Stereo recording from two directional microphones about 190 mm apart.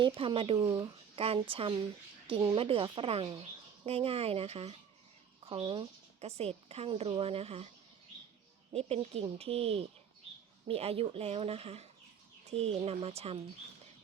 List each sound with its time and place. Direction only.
0.0 s speech: 30° right (ahead or behind)
8.7 s speech: 35° right (ahead or behind)